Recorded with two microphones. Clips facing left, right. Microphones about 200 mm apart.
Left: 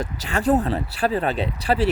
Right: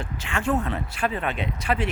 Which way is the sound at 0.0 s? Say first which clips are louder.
Left 5 dB; 40° left (ahead or behind).